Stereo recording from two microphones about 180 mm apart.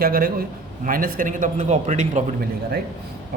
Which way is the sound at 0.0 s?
55° right (ahead or behind).